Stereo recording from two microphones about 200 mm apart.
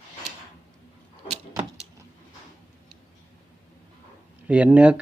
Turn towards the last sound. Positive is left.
turn(degrees=-5)  # may be behind; listen again after turning